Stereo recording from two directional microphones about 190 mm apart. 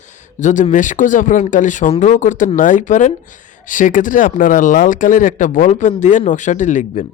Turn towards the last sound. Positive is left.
turn(degrees=40)  # may be behind; listen again after turning